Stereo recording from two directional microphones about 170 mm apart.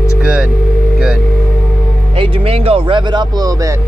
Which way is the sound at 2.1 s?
30° right (ahead or behind).